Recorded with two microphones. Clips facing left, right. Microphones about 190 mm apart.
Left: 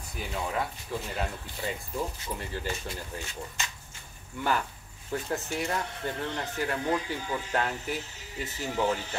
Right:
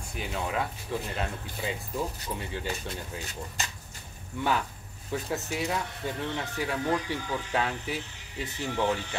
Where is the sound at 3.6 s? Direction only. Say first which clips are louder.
Right 2 dB; 35° right (ahead or behind).